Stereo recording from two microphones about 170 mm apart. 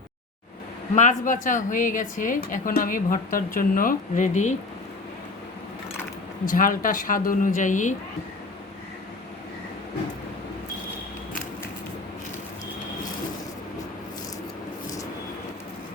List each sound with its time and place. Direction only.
0.9 s a woman's voice: 50° left (ahead or behind)
6.5 s a woman's voice: 55° left (ahead or behind)